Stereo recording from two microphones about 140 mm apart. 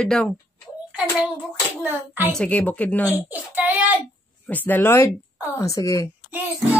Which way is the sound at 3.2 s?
10° right (ahead or behind).